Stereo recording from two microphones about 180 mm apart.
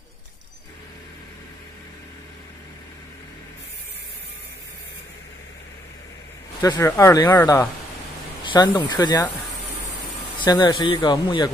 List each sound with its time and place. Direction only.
6.6 s speech: 20° left (ahead or behind)
8.5 s speech: 25° left (ahead or behind)
10.4 s speech: 25° left (ahead or behind)